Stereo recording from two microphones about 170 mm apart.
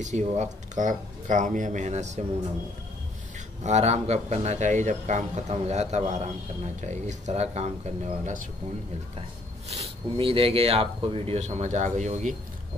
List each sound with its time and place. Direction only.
0.0 s speech: 45° right (ahead or behind)
3.3 s a man's voice: 40° right (ahead or behind)
9.7 s a man's voice: 35° right (ahead or behind)